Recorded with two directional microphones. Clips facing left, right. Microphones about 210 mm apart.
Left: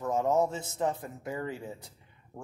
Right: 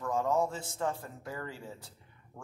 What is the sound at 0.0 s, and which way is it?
A man's voice, 20° left (ahead or behind).